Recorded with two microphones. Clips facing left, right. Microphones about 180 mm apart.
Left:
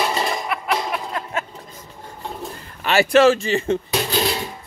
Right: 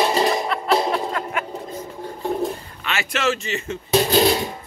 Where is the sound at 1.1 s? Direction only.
25° left (ahead or behind).